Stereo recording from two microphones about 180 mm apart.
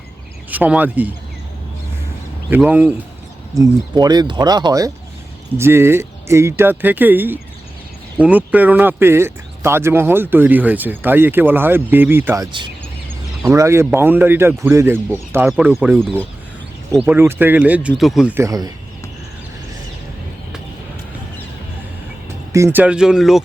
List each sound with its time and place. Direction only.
0.5 s speech: 10° right (ahead or behind)
2.5 s speech: 10° right (ahead or behind)
3.6 s speech: 20° right (ahead or behind)
17.0 s speech: 10° right (ahead or behind)
18.3 s speech: 20° right (ahead or behind)
22.5 s speech: 15° right (ahead or behind)